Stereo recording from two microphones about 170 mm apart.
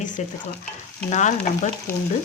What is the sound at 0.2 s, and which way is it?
A woman's voice, 45° left (ahead or behind).